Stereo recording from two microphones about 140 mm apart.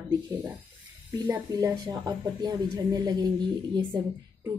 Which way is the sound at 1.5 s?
30° right (ahead or behind).